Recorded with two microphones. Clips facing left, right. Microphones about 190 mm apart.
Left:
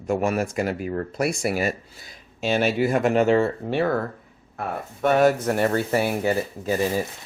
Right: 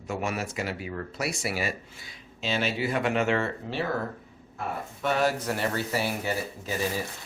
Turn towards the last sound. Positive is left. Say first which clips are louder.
# left 7 dB
turn(degrees=50)  # may be behind; listen again after turning